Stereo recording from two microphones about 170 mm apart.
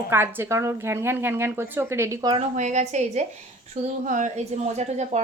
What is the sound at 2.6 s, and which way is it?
A woman's voice, 45° right (ahead or behind).